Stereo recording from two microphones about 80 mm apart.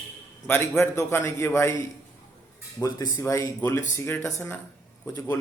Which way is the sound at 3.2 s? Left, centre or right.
Left.